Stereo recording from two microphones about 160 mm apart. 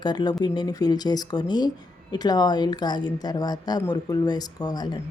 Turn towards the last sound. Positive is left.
turn(degrees=25)  # may be behind; listen again after turning